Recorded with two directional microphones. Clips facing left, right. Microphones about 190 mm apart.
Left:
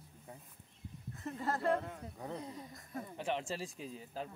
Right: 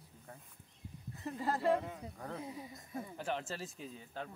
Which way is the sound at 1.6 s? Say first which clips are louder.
Right 2 dB; 5° right (ahead or behind).